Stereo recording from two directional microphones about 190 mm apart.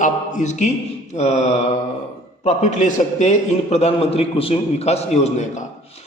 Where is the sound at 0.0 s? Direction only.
40° left (ahead or behind).